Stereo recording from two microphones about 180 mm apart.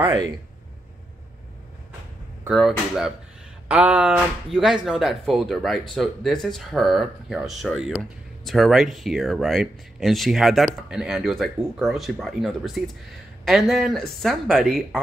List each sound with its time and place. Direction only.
0.0 s speech: 20° right (ahead or behind)
2.4 s speech: centre (ahead or behind)